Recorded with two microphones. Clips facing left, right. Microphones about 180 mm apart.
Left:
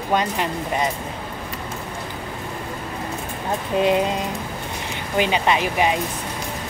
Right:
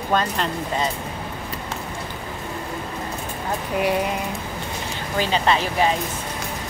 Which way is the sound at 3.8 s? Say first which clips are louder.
Left 4 dB; 20° left (ahead or behind).